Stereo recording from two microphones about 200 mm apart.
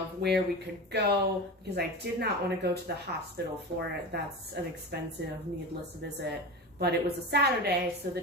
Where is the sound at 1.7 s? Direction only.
55° right (ahead or behind).